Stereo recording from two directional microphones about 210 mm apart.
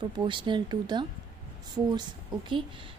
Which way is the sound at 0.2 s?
25° right (ahead or behind).